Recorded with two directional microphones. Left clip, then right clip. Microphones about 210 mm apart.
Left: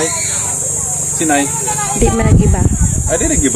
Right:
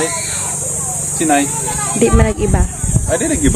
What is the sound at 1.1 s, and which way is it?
Speech, 15° right (ahead or behind).